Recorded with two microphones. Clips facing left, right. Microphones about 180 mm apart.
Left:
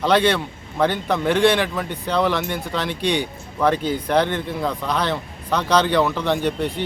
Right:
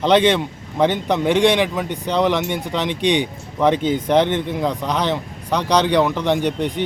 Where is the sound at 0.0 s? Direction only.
20° right (ahead or behind).